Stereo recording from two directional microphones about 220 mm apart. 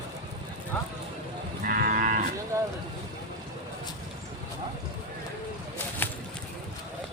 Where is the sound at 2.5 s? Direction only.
15° right (ahead or behind).